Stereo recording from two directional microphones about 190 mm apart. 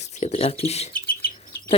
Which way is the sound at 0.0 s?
35° left (ahead or behind).